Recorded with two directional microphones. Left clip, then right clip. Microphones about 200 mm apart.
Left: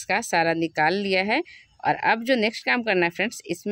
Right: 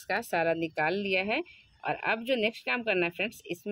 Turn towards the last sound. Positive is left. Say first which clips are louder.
# left 7 dB
turn(degrees=55)  # may be behind; listen again after turning